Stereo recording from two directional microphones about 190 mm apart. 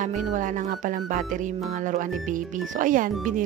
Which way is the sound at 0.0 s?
40° right (ahead or behind).